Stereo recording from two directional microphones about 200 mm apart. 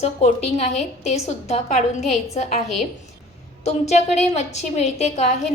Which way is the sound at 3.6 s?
35° left (ahead or behind).